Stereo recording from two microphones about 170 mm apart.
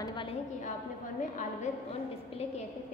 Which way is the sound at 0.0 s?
30° left (ahead or behind).